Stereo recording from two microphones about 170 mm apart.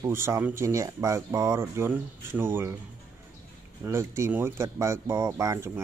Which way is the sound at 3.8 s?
15° right (ahead or behind).